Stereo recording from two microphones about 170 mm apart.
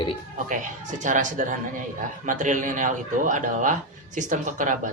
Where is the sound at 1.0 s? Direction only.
50° right (ahead or behind).